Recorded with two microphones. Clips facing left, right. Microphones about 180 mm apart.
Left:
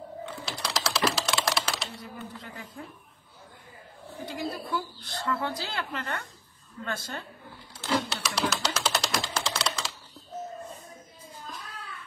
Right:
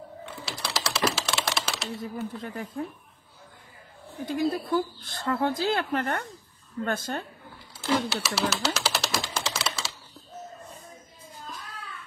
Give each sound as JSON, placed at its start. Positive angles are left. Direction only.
{"t": 0.5, "sound": "typing", "side_deg": -5}
{"t": 2.0, "sound": "speech", "side_deg": -50}
{"t": 4.3, "sound": "speech", "side_deg": -50}
{"t": 7.8, "sound": "a sound", "side_deg": 0}